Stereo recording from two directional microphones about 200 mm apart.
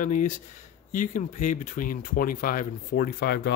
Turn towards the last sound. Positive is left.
turn(degrees=55)  # may be behind; listen again after turning